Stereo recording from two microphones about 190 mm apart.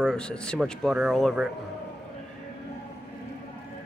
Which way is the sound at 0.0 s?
5° left (ahead or behind).